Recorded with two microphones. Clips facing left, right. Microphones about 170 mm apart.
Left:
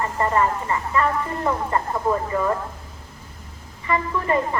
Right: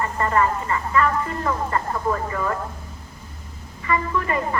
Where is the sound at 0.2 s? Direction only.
25° left (ahead or behind).